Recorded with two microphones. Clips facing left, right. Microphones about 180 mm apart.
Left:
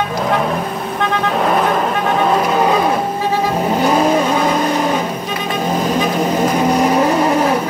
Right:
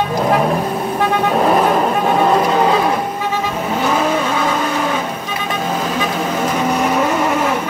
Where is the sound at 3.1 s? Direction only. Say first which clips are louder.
Left 3 dB; 35° left (ahead or behind).